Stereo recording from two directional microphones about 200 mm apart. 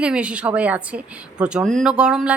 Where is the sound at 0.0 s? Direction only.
5° right (ahead or behind).